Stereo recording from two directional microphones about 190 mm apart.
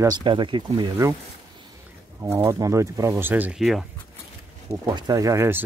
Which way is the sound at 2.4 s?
15° right (ahead or behind).